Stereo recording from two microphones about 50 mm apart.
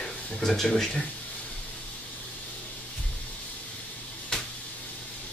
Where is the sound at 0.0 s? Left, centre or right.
Centre.